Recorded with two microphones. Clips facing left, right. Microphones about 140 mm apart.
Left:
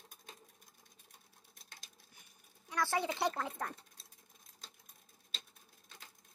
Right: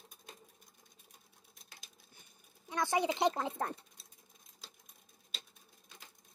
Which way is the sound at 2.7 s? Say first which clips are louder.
Right 3 dB; 20° right (ahead or behind).